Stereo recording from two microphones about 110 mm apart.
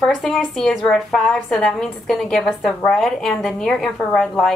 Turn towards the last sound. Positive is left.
turn(degrees=0)  # may be behind; listen again after turning